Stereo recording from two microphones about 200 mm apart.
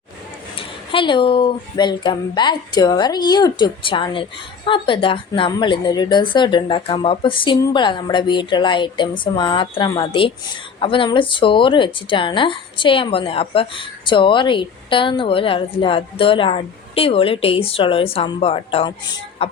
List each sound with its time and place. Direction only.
0.5 s speech: 25° left (ahead or behind)